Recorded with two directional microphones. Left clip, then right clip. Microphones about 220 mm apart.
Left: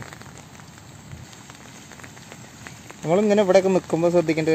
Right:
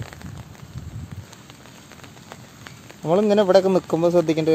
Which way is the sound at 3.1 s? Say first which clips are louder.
Right 1 dB; 5° right (ahead or behind).